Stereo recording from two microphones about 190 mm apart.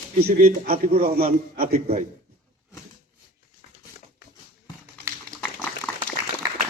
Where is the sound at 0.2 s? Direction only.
50° right (ahead or behind).